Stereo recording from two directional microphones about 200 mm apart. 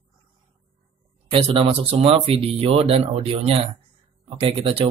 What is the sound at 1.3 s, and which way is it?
Speech, 30° right (ahead or behind).